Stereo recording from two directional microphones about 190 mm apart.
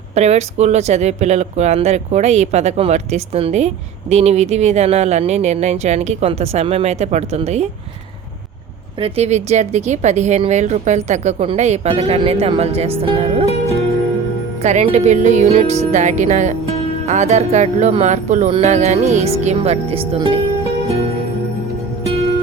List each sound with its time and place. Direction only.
0.1 s speech: 35° right (ahead or behind)
9.0 s speech: 30° right (ahead or behind)
13.4 s music: 35° left (ahead or behind)
14.6 s speech: 35° right (ahead or behind)